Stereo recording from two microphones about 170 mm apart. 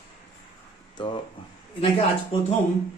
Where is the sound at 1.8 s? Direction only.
35° left (ahead or behind).